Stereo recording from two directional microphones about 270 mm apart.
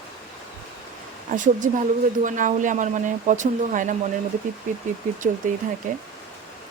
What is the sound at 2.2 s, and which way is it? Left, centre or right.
Speech, right.